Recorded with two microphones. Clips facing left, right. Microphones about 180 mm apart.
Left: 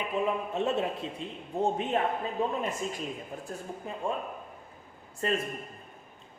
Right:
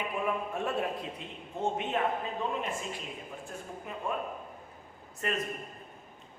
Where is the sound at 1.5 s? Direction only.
35° left (ahead or behind).